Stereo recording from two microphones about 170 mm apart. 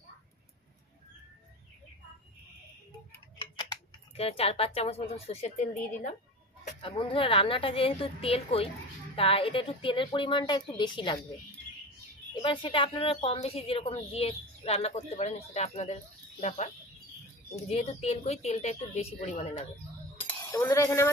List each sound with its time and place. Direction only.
3.3 s a sound: 25° left (ahead or behind)
4.2 s speech: 35° left (ahead or behind)
6.8 s a woman's voice: 30° left (ahead or behind)
12.4 s speech: 30° left (ahead or behind)
20.2 s cutlery: 10° left (ahead or behind)